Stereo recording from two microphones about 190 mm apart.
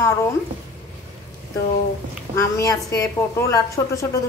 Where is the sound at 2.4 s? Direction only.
15° left (ahead or behind).